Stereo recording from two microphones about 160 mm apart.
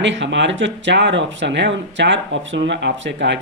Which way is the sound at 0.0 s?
90° right.